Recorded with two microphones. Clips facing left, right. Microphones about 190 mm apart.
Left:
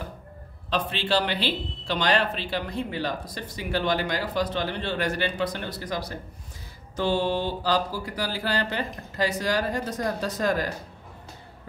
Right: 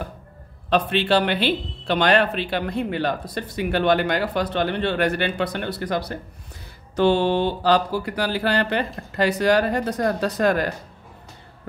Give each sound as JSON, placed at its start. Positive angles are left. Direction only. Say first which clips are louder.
{"t": 0.7, "sound": "speech", "louder": "right 7 dB", "side_deg": -60}